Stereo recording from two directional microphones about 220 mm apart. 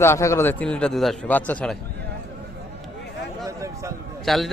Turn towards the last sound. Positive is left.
turn(degrees=0)  # may be behind; listen again after turning